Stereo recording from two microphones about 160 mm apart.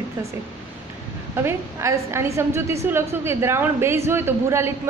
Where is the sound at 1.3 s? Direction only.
15° right (ahead or behind).